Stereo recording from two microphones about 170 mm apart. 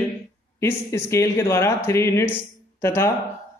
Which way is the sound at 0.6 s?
15° left (ahead or behind).